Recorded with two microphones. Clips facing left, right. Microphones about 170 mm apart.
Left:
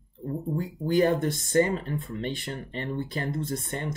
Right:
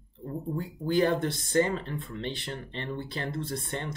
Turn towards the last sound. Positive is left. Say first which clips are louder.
# left 2 dB
turn(degrees=45)  # may be behind; listen again after turning